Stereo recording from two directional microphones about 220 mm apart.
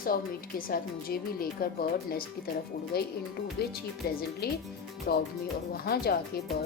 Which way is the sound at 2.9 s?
45° left (ahead or behind).